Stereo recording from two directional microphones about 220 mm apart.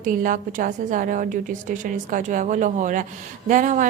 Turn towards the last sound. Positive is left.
turn(degrees=-35)  # may be behind; listen again after turning